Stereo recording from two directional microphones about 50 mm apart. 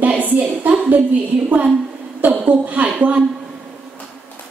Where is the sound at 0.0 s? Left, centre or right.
Right.